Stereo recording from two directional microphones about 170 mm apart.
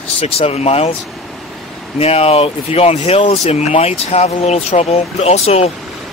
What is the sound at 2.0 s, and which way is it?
Speech, 35° left (ahead or behind).